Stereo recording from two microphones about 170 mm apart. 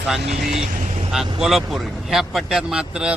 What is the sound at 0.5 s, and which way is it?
Speech, 35° right (ahead or behind).